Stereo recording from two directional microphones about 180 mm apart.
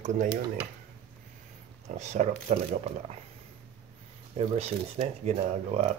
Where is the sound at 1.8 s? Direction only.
40° right (ahead or behind).